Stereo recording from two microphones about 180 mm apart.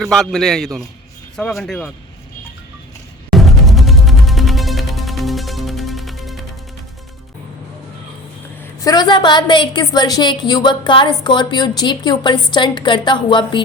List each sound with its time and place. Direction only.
0.0 s a man's voice: centre (ahead or behind)
3.3 s music: centre (ahead or behind)
8.8 s a woman's voice: 20° left (ahead or behind)